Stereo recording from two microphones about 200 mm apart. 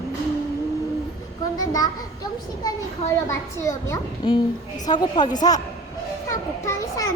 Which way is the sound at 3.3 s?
15° left (ahead or behind).